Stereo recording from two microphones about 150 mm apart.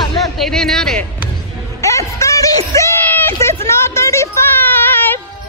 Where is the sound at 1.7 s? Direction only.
20° left (ahead or behind).